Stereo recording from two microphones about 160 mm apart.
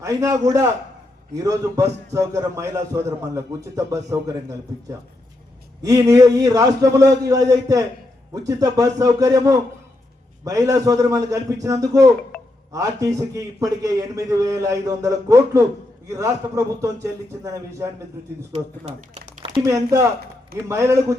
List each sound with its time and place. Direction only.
0.0 s a man's voice: 20° right (ahead or behind)
18.5 s speech: 45° right (ahead or behind)
19.6 s a man's voice: 20° right (ahead or behind)